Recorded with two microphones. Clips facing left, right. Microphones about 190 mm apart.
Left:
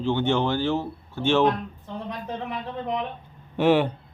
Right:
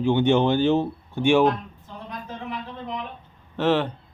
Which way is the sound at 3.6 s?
10° left (ahead or behind).